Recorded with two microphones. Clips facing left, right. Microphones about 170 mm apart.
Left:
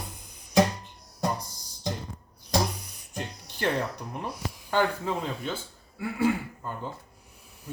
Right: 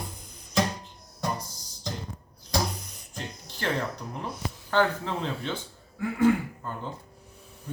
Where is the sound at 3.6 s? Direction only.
15° left (ahead or behind).